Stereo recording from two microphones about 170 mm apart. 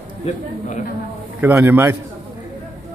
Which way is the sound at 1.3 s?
10° right (ahead or behind).